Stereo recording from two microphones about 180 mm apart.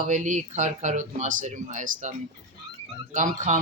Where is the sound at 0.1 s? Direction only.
40° right (ahead or behind).